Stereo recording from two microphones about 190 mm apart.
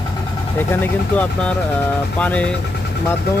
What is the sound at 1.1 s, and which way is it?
Speech, 10° left (ahead or behind).